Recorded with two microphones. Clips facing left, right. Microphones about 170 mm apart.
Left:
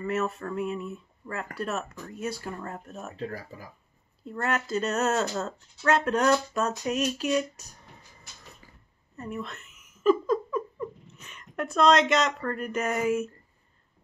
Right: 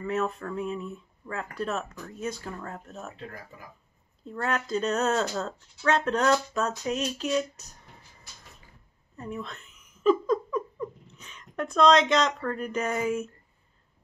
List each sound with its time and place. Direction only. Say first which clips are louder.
0.0 s speech: even; 5° left (ahead or behind)
3.2 s speech: left 6 dB; 35° left (ahead or behind)
4.2 s speech: even; 5° left (ahead or behind)
9.1 s a woman's voice: left 1 dB; 5° left (ahead or behind)
10.0 s a sound: even; 5° left (ahead or behind)